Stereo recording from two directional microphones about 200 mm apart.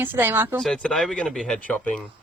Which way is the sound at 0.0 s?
10° right (ahead or behind).